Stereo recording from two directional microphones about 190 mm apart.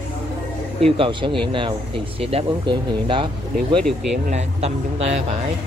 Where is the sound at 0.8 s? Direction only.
30° right (ahead or behind).